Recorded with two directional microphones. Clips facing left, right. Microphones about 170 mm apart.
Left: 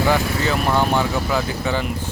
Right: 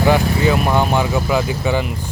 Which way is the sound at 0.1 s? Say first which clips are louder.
Right 4 dB; 15° right (ahead or behind).